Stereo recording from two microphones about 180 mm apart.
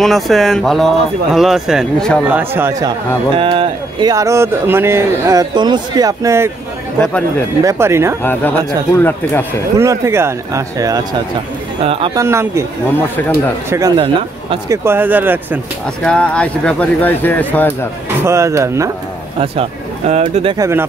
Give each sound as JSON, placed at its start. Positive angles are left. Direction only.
{"t": 0.0, "sound": "speech", "side_deg": 0}
{"t": 2.2, "sound": "speech", "side_deg": -10}
{"t": 3.3, "sound": "speech", "side_deg": -30}
{"t": 7.6, "sound": "speech", "side_deg": -15}
{"t": 8.2, "sound": "speech", "side_deg": 10}
{"t": 9.8, "sound": "speech", "side_deg": -15}
{"t": 11.8, "sound": "speech", "side_deg": -30}
{"t": 12.2, "sound": "speech", "side_deg": -15}
{"t": 13.7, "sound": "speech", "side_deg": -20}
{"t": 14.7, "sound": "speech", "side_deg": -10}
{"t": 16.0, "sound": "speech", "side_deg": 5}
{"t": 18.2, "sound": "speech", "side_deg": -15}
{"t": 19.4, "sound": "speech", "side_deg": -30}
{"t": 20.5, "sound": "speech", "side_deg": -15}